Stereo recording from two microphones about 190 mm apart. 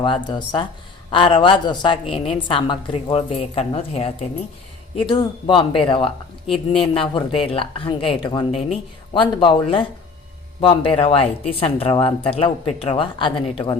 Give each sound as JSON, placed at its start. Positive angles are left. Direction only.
{"t": 0.0, "sound": "speech", "side_deg": 25}